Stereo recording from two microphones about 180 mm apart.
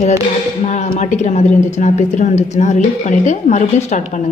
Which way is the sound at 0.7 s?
45° left (ahead or behind).